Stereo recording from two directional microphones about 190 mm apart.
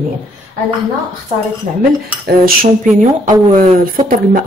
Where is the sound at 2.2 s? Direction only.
50° right (ahead or behind).